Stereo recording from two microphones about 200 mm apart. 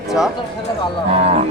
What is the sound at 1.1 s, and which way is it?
Speech, 30° right (ahead or behind).